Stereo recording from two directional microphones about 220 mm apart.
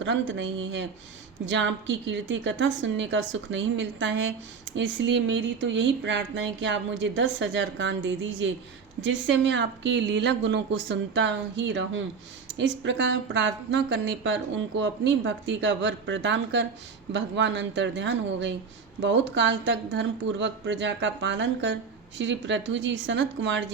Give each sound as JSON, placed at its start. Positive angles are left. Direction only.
{"t": 0.0, "sound": "a woman's voice", "side_deg": -55}